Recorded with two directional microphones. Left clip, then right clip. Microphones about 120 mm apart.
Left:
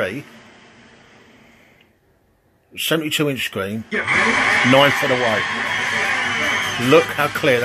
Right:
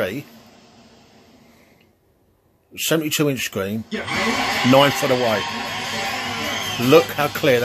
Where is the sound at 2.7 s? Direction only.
15° right (ahead or behind).